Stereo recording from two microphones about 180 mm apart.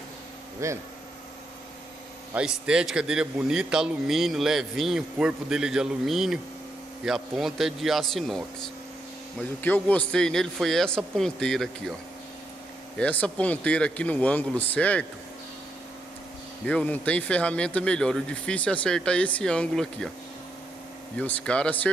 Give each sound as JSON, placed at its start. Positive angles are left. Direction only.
{"t": 0.6, "sound": "speech", "side_deg": -15}
{"t": 2.3, "sound": "a man's voice", "side_deg": -5}
{"t": 12.9, "sound": "speech", "side_deg": 5}
{"t": 16.6, "sound": "speech", "side_deg": 10}
{"t": 21.2, "sound": "speech", "side_deg": 5}